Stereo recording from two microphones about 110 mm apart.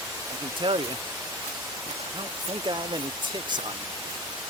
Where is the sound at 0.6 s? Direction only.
45° right (ahead or behind).